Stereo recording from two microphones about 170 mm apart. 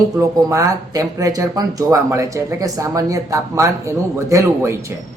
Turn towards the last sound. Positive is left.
turn(degrees=-20)  # may be behind; listen again after turning